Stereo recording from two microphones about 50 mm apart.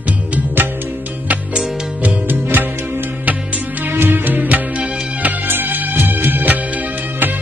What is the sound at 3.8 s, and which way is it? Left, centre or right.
Music, right.